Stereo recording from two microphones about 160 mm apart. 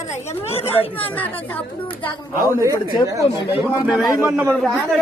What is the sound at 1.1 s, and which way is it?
Speech, 10° left (ahead or behind).